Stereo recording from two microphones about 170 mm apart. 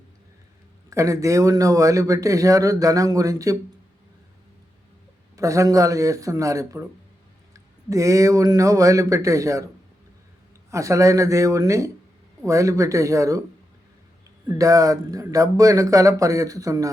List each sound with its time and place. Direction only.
0.9 s speech: 20° right (ahead or behind)
5.4 s speech: 20° right (ahead or behind)
10.7 s speech: 20° right (ahead or behind)
14.4 s speech: 20° right (ahead or behind)